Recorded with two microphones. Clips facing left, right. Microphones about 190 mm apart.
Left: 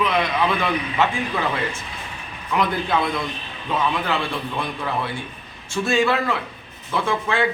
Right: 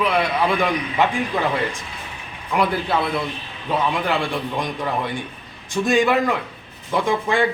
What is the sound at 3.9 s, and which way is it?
A man's voice, 15° right (ahead or behind).